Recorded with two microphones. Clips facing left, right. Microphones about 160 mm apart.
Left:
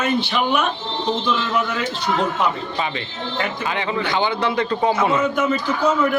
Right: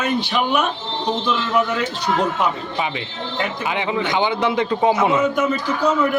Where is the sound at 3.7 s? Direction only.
20° right (ahead or behind).